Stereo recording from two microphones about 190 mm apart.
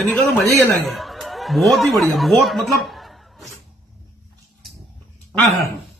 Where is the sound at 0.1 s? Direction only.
5° left (ahead or behind).